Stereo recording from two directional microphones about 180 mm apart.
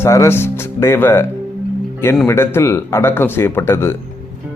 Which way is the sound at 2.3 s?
15° left (ahead or behind).